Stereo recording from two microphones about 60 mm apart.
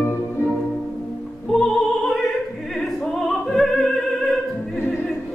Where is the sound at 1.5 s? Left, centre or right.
Centre.